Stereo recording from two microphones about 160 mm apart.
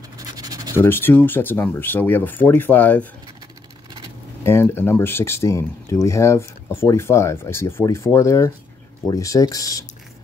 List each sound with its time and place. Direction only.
0.2 s scratch: 25° right (ahead or behind)
0.7 s speech: 15° left (ahead or behind)
4.5 s speech: 15° left (ahead or behind)